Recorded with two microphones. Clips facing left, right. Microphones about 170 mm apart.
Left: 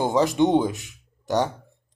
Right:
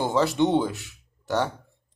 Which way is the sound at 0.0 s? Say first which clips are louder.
Left 2 dB; 15° left (ahead or behind).